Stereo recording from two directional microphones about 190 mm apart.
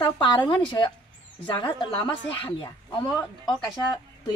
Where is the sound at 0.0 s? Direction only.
25° left (ahead or behind).